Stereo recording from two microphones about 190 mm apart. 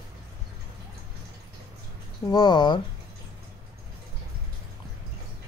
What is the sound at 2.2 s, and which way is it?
Speech, 20° left (ahead or behind).